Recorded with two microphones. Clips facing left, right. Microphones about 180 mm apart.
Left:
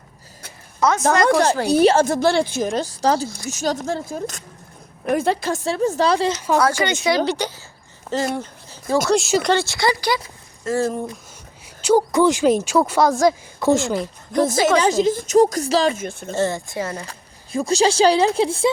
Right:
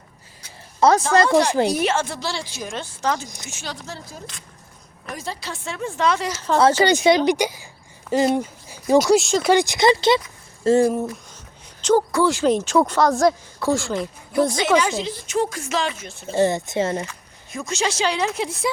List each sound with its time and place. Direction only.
0.8 s a woman's voice: 35° right (ahead or behind)
1.7 s a woman's voice: 35° left (ahead or behind)
3.2 s a woman's voice: 15° right (ahead or behind)
3.5 s a woman's voice: 45° left (ahead or behind)
6.6 s speech: 25° right (ahead or behind)
7.3 s a woman's voice: 15° right (ahead or behind)
9.1 s a woman's voice: centre (ahead or behind)
9.5 s speech: 15° right (ahead or behind)
11.8 s speech: 10° left (ahead or behind)
13.6 s a woman's voice: 20° left (ahead or behind)
13.9 s a woman's voice: centre (ahead or behind)
14.8 s a woman's voice: 40° left (ahead or behind)
16.3 s speech: 15° right (ahead or behind)
17.1 s speech: 35° left (ahead or behind)